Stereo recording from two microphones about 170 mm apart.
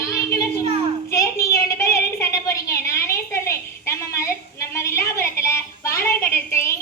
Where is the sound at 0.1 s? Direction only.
15° left (ahead or behind).